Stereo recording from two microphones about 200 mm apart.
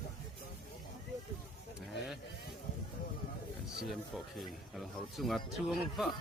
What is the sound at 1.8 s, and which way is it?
Speech, centre (ahead or behind).